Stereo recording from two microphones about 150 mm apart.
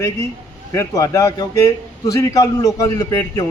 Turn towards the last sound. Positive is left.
turn(degrees=20)  # may be behind; listen again after turning